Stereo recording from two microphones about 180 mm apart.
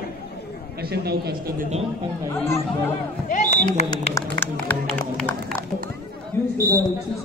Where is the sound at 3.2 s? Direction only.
40° left (ahead or behind).